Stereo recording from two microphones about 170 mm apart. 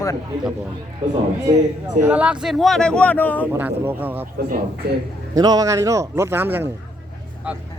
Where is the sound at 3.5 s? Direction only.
10° right (ahead or behind).